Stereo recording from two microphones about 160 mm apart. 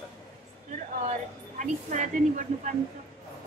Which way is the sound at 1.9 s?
50° right (ahead or behind).